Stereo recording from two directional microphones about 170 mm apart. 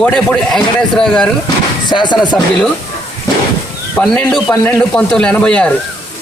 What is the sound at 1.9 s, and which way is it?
Speech, 25° left (ahead or behind).